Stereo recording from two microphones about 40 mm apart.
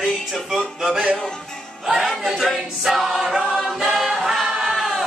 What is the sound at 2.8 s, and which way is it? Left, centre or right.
Choir, centre.